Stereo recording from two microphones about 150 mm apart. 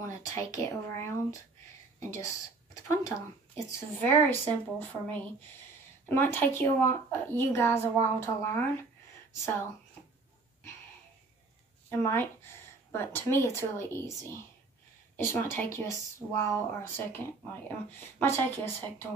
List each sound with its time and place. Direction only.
0.3 s speech: 20° left (ahead or behind)
11.9 s speech: 15° left (ahead or behind)